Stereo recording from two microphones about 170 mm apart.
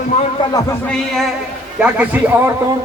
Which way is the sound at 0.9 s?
Centre (ahead or behind).